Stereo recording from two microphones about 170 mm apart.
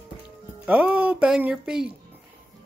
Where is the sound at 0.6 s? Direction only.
10° right (ahead or behind).